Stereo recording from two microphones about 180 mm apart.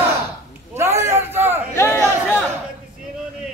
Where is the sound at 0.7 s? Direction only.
15° right (ahead or behind).